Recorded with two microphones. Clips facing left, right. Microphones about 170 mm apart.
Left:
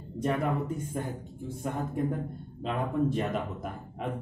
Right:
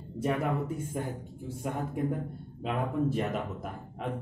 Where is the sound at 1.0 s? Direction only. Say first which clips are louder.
Even; 10° right (ahead or behind).